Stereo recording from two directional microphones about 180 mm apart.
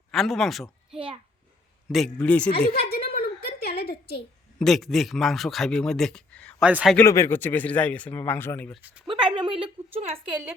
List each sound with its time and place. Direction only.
0.1 s speech: centre (ahead or behind)
0.9 s a child's voice: 30° right (ahead or behind)
2.1 s speech: 5° left (ahead or behind)
2.6 s a sound: 60° left (ahead or behind)
4.6 s speech: centre (ahead or behind)
6.7 s a man's voice: 5° right (ahead or behind)
6.9 s speech: 15° left (ahead or behind)
9.0 s a sound: 30° right (ahead or behind)